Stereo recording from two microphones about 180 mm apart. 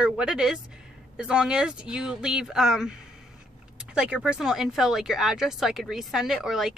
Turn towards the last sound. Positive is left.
turn(degrees=0)  # may be behind; listen again after turning